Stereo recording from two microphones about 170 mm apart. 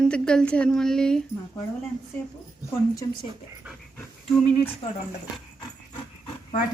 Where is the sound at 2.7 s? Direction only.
20° left (ahead or behind).